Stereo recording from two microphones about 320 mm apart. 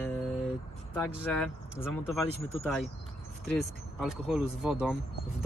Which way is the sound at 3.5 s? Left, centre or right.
Centre.